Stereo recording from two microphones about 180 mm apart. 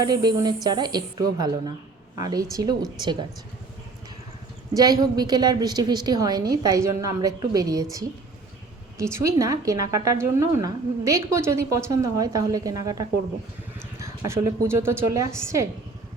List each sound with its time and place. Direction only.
0.0 s a woman's voice: 20° right (ahead or behind)
4.7 s a woman's voice: 20° right (ahead or behind)
9.1 s a woman's voice: 15° right (ahead or behind)